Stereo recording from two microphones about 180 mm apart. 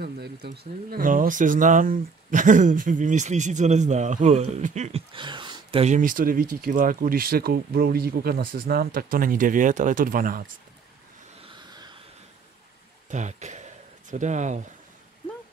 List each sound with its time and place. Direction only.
0.0 s speech: 60° right (ahead or behind); by 5.9 s 30° right (ahead or behind)
5.9 s speech: 50° right (ahead or behind)
11.4 s a sound: 25° right (ahead or behind)
13.1 s speech: 40° right (ahead or behind)